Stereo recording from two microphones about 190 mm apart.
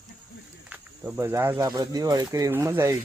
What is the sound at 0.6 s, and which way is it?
Speech, 5° right (ahead or behind).